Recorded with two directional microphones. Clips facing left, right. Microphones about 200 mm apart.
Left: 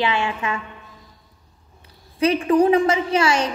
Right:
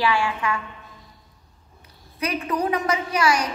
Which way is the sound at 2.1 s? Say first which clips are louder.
Left 9 dB; 30° left (ahead or behind).